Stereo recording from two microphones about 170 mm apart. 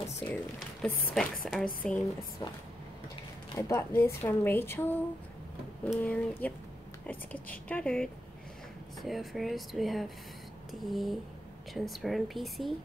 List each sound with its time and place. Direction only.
0.3 s speech: 10° left (ahead or behind)
2.4 s speech: 25° left (ahead or behind); by 12.7 s centre (ahead or behind)